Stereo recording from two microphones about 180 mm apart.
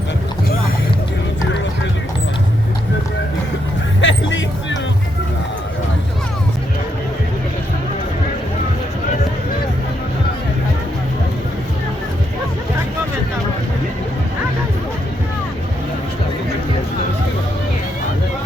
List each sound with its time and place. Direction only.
4.0 s music: 90° left